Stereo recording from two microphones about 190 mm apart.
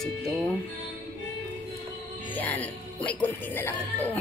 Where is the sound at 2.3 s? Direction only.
10° left (ahead or behind).